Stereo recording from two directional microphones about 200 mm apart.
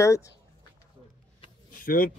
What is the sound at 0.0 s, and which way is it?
Speech, 15° left (ahead or behind).